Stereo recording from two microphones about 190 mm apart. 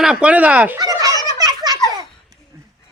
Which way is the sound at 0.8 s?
20° right (ahead or behind).